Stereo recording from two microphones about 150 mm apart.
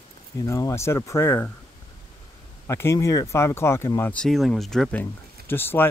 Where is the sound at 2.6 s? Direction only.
20° left (ahead or behind).